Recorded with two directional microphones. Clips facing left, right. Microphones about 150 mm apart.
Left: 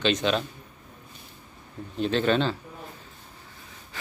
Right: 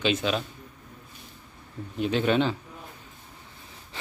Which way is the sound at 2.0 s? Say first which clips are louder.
Even; 10° right (ahead or behind).